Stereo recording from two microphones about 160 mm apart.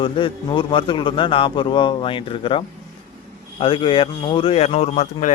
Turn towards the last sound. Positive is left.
turn(degrees=50)  # may be behind; listen again after turning